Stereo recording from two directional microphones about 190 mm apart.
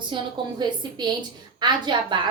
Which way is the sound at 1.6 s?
25° right (ahead or behind).